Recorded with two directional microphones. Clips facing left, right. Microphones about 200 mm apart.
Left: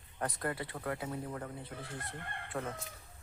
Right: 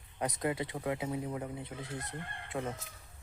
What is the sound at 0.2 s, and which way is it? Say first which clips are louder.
Speech: right 3 dB; 15° right (ahead or behind).